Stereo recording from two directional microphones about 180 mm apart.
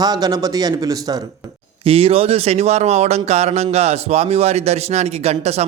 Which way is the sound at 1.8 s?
30° right (ahead or behind).